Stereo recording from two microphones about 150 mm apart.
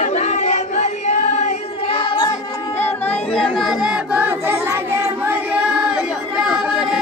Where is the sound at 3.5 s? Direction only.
Centre (ahead or behind).